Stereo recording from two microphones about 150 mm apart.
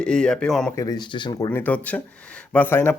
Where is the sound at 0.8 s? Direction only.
25° left (ahead or behind).